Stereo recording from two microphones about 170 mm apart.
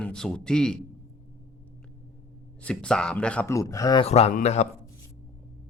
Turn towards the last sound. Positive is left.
turn(degrees=40)  # may be behind; listen again after turning